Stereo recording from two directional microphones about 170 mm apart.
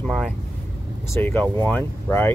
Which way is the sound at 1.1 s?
10° left (ahead or behind).